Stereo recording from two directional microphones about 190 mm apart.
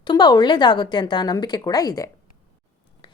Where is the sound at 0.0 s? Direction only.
20° left (ahead or behind).